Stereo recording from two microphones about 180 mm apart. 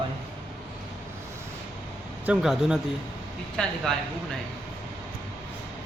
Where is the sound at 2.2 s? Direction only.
5° right (ahead or behind).